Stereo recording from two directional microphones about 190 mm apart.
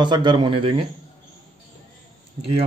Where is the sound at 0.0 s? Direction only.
25° right (ahead or behind).